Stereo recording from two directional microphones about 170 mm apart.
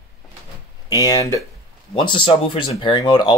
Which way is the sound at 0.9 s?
20° left (ahead or behind).